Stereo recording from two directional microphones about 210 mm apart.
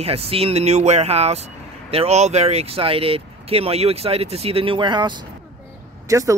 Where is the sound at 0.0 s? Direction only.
30° right (ahead or behind).